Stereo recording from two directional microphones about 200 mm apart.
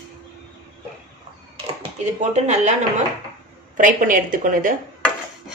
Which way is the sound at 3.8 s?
40° right (ahead or behind).